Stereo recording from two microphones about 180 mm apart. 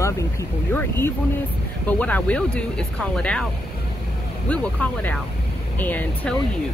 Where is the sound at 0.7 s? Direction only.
15° left (ahead or behind).